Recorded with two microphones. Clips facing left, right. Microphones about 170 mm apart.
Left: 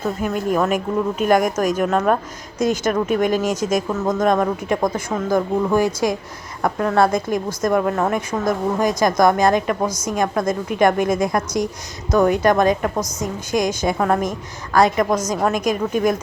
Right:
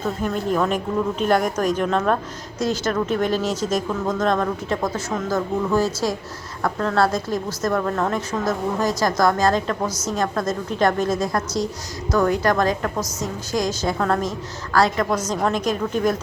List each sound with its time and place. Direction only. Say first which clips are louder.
0.0 s a woman's voice: left 2 dB; 10° left (ahead or behind)
2.6 s a woman's voice: left 3 dB; 20° left (ahead or behind)
13.0 s a woman's voice: left 2 dB; 5° right (ahead or behind)
13.5 s a woman's voice: left 3 dB; 20° left (ahead or behind)